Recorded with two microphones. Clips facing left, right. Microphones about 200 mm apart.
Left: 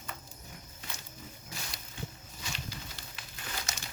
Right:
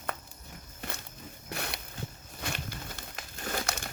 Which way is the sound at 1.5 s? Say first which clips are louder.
Right 10 dB; 60° right (ahead or behind).